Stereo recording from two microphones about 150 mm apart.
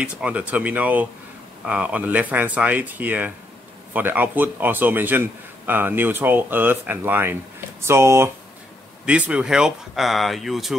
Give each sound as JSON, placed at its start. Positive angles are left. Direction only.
{"t": 0.0, "sound": "a man's voice", "side_deg": -10}
{"t": 9.0, "sound": "speech", "side_deg": -10}